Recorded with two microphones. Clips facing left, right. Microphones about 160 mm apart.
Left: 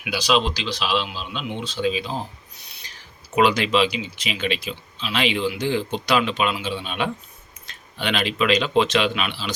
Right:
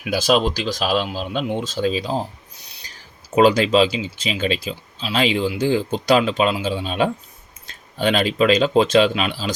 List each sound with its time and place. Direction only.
0.0 s speech: 45° right (ahead or behind)
3.3 s speech: 40° right (ahead or behind)